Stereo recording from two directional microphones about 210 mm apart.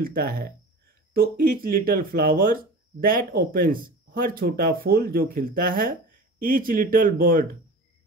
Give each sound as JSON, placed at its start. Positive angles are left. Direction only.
{"t": 0.0, "sound": "speech", "side_deg": -45}